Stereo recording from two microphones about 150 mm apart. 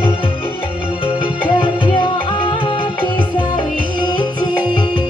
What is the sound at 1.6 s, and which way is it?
Music, 35° left (ahead or behind).